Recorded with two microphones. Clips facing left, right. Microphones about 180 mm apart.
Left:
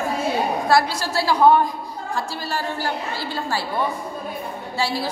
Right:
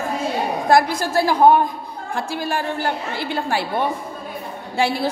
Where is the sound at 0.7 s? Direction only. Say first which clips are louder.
Right 5 dB; 50° right (ahead or behind).